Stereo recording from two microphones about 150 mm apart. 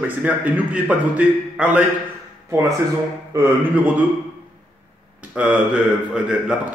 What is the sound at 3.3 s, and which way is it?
Speech, 20° right (ahead or behind).